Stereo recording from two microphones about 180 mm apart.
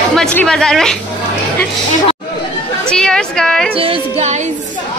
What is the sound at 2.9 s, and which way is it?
Speech, 5° left (ahead or behind).